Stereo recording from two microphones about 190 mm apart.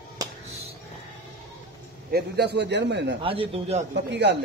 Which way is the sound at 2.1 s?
60° right (ahead or behind).